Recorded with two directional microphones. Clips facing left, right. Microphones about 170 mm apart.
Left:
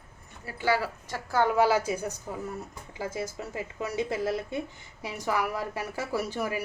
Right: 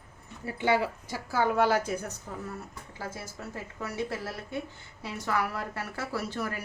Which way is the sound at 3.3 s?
20° left (ahead or behind).